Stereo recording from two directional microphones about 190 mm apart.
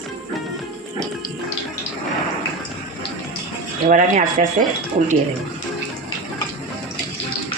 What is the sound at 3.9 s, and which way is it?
Speech, 40° right (ahead or behind).